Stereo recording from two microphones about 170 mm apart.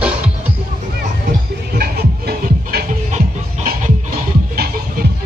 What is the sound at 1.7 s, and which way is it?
Music, 65° right (ahead or behind).